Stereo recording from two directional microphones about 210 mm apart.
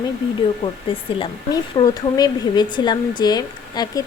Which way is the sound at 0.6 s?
25° left (ahead or behind).